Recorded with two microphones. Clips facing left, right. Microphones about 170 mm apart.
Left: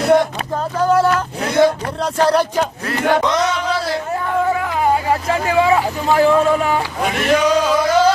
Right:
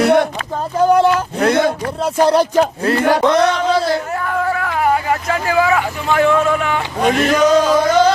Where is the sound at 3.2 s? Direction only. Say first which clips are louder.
Right 5 dB; 60° right (ahead or behind).